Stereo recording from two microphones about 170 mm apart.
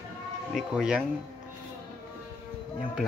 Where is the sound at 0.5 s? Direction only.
5° right (ahead or behind).